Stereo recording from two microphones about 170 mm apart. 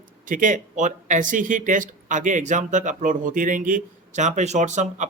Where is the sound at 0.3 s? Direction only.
50° right (ahead or behind).